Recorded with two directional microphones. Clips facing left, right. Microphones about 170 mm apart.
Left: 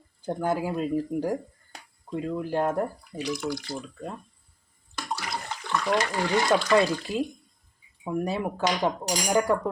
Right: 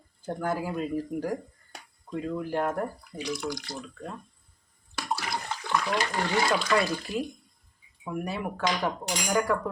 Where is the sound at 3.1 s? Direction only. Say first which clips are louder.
Left 3 dB; 5° left (ahead or behind).